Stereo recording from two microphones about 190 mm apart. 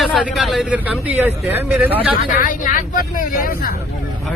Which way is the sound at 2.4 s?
45° left (ahead or behind).